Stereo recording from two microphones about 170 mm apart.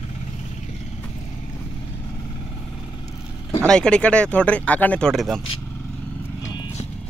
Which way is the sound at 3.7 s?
5° left (ahead or behind).